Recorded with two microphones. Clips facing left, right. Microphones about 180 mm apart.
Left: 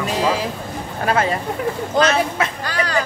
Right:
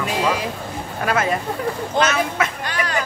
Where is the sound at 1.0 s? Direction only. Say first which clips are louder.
Left 1 dB; 30° left (ahead or behind).